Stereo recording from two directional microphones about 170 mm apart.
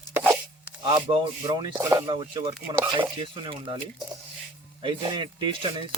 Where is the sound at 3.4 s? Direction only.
30° right (ahead or behind).